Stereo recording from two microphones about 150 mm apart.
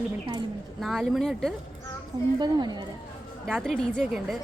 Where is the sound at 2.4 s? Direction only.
30° right (ahead or behind).